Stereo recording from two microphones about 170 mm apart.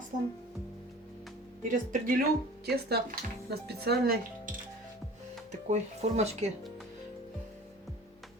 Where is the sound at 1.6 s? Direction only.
50° right (ahead or behind).